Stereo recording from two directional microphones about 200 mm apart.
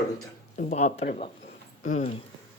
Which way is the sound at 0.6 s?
35° left (ahead or behind).